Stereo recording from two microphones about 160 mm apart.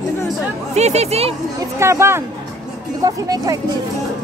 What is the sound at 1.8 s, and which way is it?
Speech, 15° right (ahead or behind).